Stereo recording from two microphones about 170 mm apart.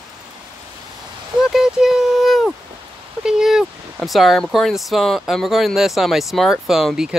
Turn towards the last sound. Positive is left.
turn(degrees=-5)  # may be behind; listen again after turning